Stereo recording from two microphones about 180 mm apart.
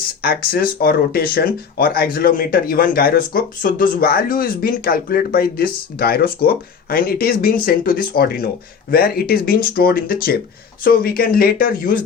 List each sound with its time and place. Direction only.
0.2 s speech: 55° left (ahead or behind)